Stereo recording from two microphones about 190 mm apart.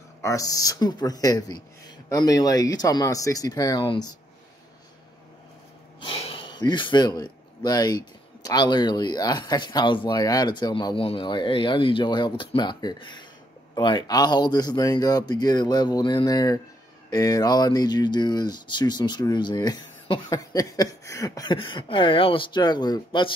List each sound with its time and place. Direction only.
0.2 s speech: 15° left (ahead or behind)
5.9 s speech: 30° left (ahead or behind)